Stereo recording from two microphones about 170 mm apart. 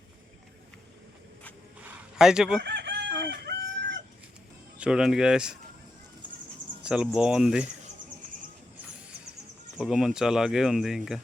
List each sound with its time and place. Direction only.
1.8 s a sound: 5° right (ahead or behind)
2.6 s chicken: 85° right
4.8 s speech: 5° right (ahead or behind)
6.8 s speech: 5° right (ahead or behind)
9.7 s speech: 5° right (ahead or behind)